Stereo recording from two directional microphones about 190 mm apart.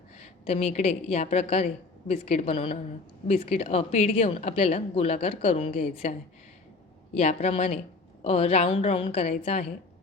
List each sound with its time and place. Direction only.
0.2 s speech: 35° left (ahead or behind)